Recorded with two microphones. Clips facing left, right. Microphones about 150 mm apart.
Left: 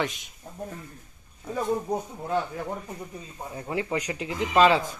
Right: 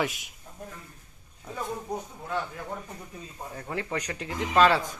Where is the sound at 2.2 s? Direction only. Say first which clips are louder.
Left 5 dB; 25° left (ahead or behind).